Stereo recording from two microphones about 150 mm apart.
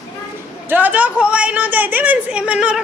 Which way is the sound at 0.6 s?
10° right (ahead or behind).